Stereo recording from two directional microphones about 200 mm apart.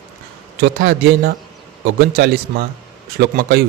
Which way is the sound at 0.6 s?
55° right (ahead or behind).